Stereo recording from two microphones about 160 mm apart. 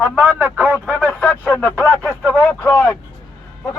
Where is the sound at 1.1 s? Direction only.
10° left (ahead or behind).